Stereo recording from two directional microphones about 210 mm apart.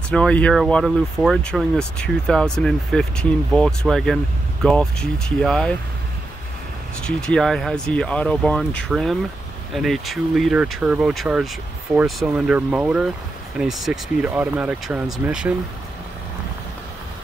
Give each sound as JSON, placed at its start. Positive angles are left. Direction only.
{"t": 0.1, "sound": "speech", "side_deg": 5}
{"t": 7.0, "sound": "speech", "side_deg": 5}